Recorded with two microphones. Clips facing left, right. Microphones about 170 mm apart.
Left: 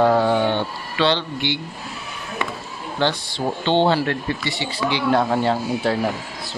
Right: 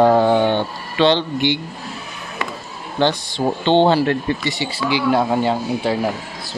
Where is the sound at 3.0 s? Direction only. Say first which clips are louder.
Right 4 dB; 20° right (ahead or behind).